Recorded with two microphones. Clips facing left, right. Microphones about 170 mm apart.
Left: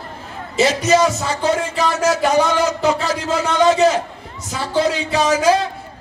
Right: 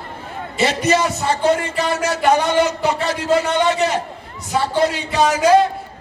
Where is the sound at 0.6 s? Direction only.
60° right (ahead or behind).